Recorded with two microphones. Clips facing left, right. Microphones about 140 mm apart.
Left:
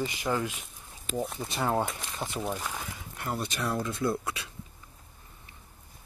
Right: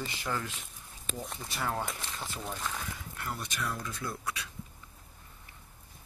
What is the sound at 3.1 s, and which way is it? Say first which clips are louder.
Speech: left 6 dB; 30° left (ahead or behind).